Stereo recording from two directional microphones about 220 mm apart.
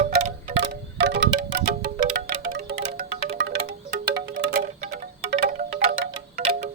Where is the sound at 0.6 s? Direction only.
50° right (ahead or behind).